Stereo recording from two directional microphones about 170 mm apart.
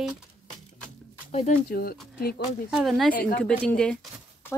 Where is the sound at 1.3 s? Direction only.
40° left (ahead or behind).